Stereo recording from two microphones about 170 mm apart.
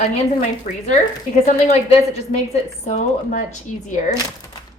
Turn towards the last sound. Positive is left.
turn(degrees=45)  # may be behind; listen again after turning